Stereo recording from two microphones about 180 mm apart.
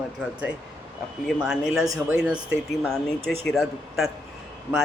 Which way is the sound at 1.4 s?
5° right (ahead or behind).